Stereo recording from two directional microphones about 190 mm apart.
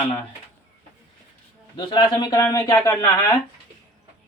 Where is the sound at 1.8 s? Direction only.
25° left (ahead or behind).